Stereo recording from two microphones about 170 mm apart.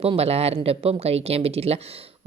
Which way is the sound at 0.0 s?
35° right (ahead or behind).